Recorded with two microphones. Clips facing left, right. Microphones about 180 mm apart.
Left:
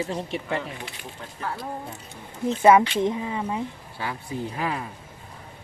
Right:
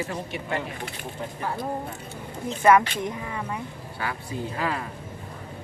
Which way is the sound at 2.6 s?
25° left (ahead or behind).